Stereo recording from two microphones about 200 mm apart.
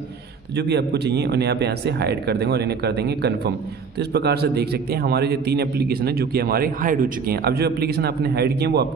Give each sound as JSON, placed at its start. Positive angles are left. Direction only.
{"t": 0.6, "sound": "a man's voice", "side_deg": -55}